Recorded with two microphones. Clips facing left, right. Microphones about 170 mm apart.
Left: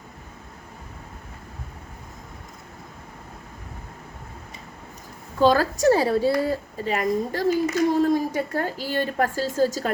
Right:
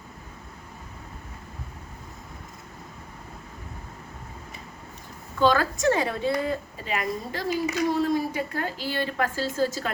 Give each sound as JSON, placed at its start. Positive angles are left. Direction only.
{"t": 5.4, "sound": "a woman's voice", "side_deg": 40}